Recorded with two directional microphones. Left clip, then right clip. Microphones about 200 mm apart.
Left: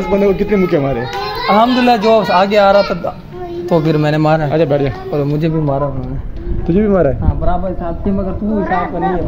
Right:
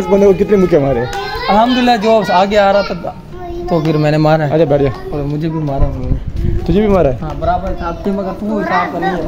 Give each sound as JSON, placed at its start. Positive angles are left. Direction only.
{"t": 0.0, "sound": "speech", "side_deg": -35}
{"t": 1.5, "sound": "speech", "side_deg": 0}
{"t": 4.0, "sound": "a man's voice", "side_deg": -20}
{"t": 6.7, "sound": "a man's voice", "side_deg": -25}